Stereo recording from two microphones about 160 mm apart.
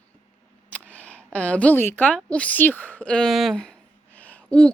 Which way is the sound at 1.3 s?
10° left (ahead or behind).